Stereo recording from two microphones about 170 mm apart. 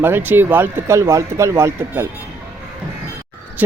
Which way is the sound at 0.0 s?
10° right (ahead or behind).